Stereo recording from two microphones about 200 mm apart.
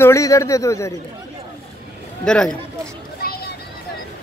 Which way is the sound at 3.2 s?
50° left (ahead or behind).